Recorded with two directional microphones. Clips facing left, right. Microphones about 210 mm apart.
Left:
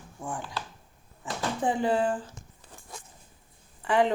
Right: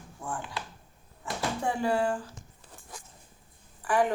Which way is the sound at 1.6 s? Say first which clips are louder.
Left 2 dB; 20° left (ahead or behind).